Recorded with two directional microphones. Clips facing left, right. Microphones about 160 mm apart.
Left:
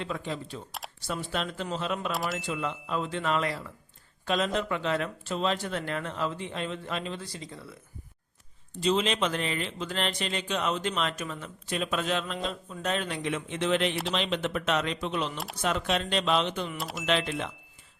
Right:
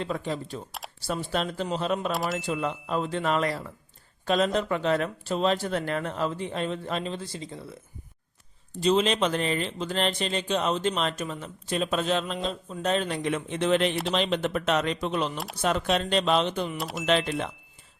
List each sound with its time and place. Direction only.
0.0 s speech: 40° right (ahead or behind)
2.1 s speech: centre (ahead or behind)
2.5 s speech: 45° right (ahead or behind); by 7.6 s 25° right (ahead or behind)
8.7 s speech: 40° right (ahead or behind)
16.7 s speech: centre (ahead or behind)
17.1 s speech: 40° right (ahead or behind)